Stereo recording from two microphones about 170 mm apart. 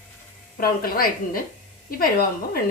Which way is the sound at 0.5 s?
55° left (ahead or behind).